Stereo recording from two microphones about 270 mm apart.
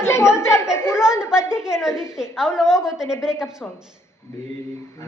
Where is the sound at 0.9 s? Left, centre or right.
Centre.